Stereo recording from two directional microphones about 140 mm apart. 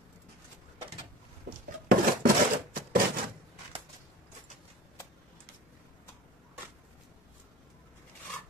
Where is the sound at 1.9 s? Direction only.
90° right.